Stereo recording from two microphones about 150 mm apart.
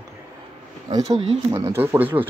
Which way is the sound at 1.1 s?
45° right (ahead or behind).